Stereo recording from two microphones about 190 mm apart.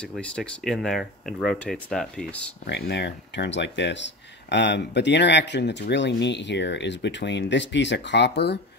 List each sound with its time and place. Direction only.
0.0 s speech: 5° left (ahead or behind)
2.6 s speech: 60° left (ahead or behind)